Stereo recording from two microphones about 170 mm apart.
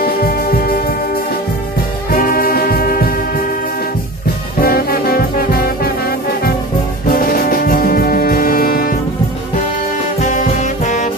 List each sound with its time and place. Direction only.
0.0 s music: 60° left (ahead or behind)
2.1 s music: 55° left (ahead or behind)
4.6 s brass instrument: 60° left (ahead or behind)
7.1 s music: 60° left (ahead or behind)
10.2 s saxophone: 45° left (ahead or behind)